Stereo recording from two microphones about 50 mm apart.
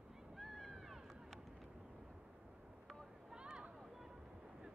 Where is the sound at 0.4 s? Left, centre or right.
Centre.